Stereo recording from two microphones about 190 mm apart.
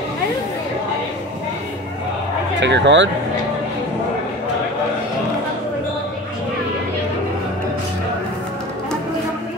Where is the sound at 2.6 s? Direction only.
70° right (ahead or behind).